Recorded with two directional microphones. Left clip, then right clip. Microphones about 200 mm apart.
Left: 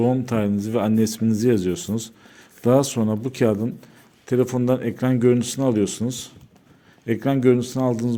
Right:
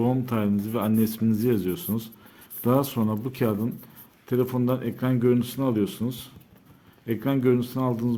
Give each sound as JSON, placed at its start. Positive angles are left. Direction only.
{"t": 0.0, "sound": "speech", "side_deg": 20}